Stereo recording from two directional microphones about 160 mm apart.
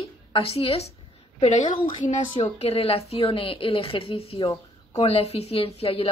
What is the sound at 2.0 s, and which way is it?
A woman's voice, 45° left (ahead or behind).